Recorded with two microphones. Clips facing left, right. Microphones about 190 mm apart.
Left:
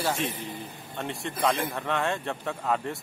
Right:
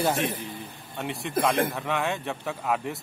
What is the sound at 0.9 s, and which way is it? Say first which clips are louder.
A man's voice: right 5 dB; centre (ahead or behind).